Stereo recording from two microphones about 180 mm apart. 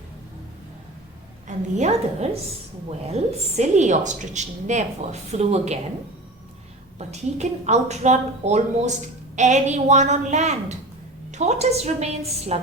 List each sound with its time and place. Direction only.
1.5 s a woman's voice: 40° right (ahead or behind)
7.1 s a woman's voice: 40° right (ahead or behind)